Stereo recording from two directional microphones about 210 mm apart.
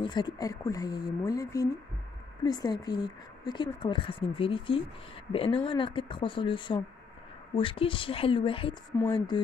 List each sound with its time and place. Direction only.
0.0 s speech: 20° left (ahead or behind)
8.9 s speech: 15° left (ahead or behind)